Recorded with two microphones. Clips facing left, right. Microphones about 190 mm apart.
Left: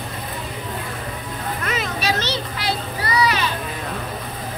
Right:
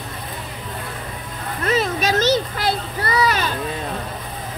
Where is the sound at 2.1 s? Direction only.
45° right (ahead or behind).